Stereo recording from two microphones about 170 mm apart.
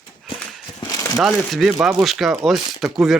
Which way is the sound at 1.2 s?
Centre (ahead or behind).